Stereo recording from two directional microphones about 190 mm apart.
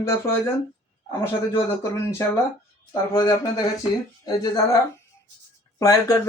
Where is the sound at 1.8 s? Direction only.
15° left (ahead or behind).